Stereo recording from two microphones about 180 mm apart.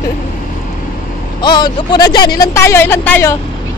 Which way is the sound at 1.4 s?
25° left (ahead or behind).